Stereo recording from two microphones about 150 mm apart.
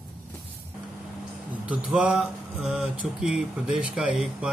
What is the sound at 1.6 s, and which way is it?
Speech, 10° right (ahead or behind).